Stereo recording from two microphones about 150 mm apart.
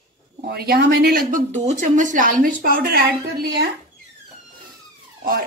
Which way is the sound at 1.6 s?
60° right (ahead or behind).